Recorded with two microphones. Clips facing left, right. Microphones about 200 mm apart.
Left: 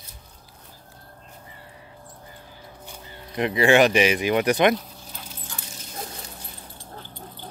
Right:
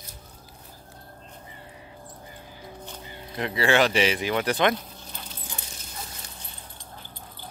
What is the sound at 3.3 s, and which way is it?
Speech, 20° left (ahead or behind).